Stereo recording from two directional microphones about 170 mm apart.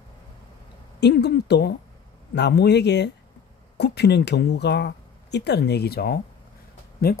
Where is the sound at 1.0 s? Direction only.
75° left (ahead or behind).